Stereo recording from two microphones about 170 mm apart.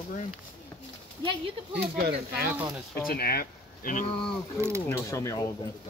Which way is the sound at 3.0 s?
60° left (ahead or behind).